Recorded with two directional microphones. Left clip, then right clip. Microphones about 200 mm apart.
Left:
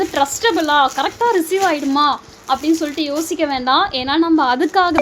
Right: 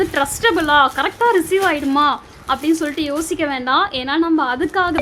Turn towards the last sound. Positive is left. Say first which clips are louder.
# left 3 dB
turn(degrees=10)  # may be behind; listen again after turning